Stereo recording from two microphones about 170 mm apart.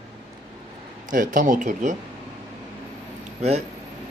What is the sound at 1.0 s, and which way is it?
Speech, 50° right (ahead or behind).